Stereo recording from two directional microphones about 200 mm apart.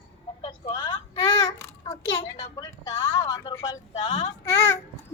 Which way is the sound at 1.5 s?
15° left (ahead or behind).